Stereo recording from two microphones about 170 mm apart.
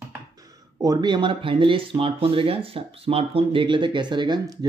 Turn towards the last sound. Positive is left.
turn(degrees=-25)  # may be behind; listen again after turning